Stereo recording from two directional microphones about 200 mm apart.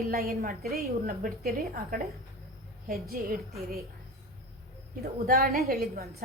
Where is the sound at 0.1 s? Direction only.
50° right (ahead or behind).